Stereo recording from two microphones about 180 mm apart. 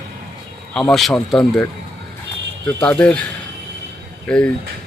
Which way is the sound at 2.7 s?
5° left (ahead or behind).